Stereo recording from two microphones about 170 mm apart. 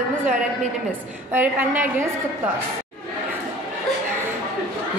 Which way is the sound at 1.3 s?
10° right (ahead or behind).